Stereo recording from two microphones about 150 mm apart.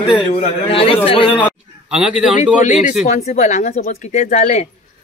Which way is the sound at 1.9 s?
5° right (ahead or behind).